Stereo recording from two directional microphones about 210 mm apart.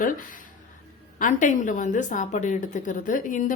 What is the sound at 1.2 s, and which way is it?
Speech, 35° left (ahead or behind).